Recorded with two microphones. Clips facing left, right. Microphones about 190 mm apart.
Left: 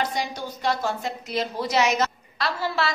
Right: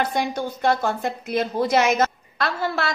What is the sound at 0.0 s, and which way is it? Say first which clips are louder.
A woman's voice: right 4 dB; 55° right (ahead or behind).